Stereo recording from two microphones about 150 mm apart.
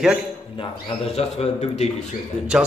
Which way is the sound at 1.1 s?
45° left (ahead or behind).